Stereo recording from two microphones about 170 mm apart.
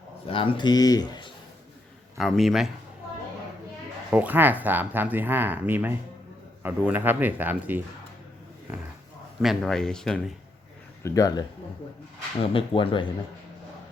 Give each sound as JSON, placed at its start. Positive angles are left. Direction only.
{"t": 0.3, "sound": "speech", "side_deg": 30}
{"t": 2.1, "sound": "speech", "side_deg": 0}
{"t": 4.1, "sound": "speech", "side_deg": -10}
{"t": 9.4, "sound": "speech", "side_deg": 0}
{"t": 11.0, "sound": "speech", "side_deg": 20}